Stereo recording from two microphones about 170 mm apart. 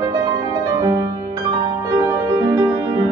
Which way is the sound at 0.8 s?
20° right (ahead or behind).